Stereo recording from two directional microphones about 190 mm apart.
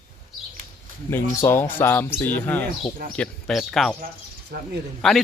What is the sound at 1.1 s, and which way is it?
Speech, 10° left (ahead or behind).